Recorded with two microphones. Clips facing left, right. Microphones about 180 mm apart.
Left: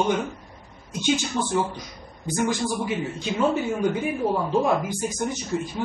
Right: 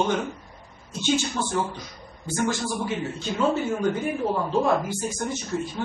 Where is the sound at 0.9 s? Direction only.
15° left (ahead or behind).